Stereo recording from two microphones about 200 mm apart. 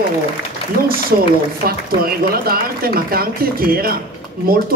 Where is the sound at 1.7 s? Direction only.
50° right (ahead or behind).